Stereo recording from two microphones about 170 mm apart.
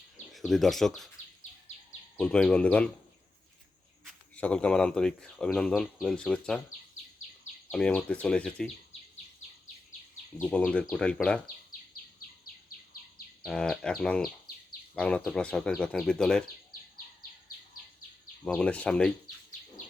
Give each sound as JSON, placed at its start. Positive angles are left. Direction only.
{"t": 0.3, "sound": "speech", "side_deg": 0}
{"t": 2.1, "sound": "speech", "side_deg": 5}
{"t": 4.0, "sound": "speech", "side_deg": 5}
{"t": 7.7, "sound": "speech", "side_deg": 5}
{"t": 10.4, "sound": "speech", "side_deg": 5}
{"t": 13.4, "sound": "speech", "side_deg": 5}
{"t": 18.4, "sound": "speech", "side_deg": 5}